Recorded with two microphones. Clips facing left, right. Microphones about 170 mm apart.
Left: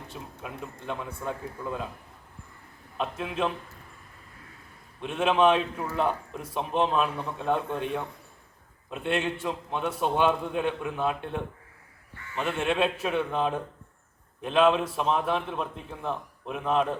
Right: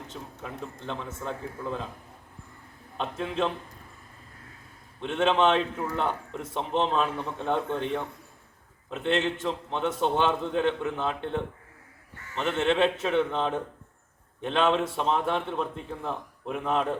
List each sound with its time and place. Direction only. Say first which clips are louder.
0.1 s a man's voice: left 2 dB; 10° left (ahead or behind)
3.0 s a man's voice: right 1 dB; 5° left (ahead or behind)
4.9 s a man's voice: even; 5° left (ahead or behind)